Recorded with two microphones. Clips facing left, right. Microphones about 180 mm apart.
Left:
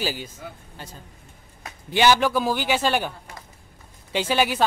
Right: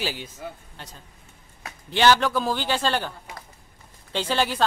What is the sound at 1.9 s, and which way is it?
Speech, 10° left (ahead or behind).